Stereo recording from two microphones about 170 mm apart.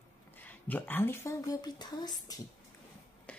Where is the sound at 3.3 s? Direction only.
5° left (ahead or behind).